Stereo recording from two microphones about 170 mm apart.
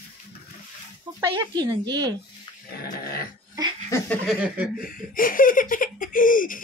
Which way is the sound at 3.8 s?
15° left (ahead or behind).